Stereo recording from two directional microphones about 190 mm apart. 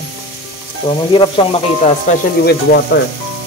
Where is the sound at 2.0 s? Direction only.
55° left (ahead or behind).